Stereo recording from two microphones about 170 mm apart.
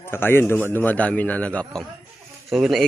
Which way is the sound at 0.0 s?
15° left (ahead or behind).